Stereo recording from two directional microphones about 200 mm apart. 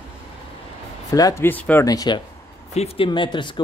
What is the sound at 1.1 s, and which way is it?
Speech, 15° left (ahead or behind).